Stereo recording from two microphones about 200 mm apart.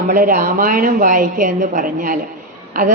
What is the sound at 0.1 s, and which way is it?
A woman's voice, 40° right (ahead or behind).